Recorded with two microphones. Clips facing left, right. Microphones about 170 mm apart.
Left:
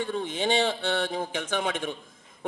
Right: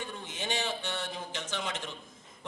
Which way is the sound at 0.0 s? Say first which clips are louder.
Left 11 dB; 60° left (ahead or behind).